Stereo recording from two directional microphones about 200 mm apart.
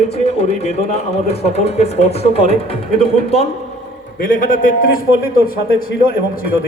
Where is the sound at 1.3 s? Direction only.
30° left (ahead or behind).